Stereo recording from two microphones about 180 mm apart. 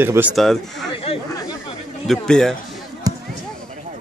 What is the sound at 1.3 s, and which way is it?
Speech, 20° left (ahead or behind).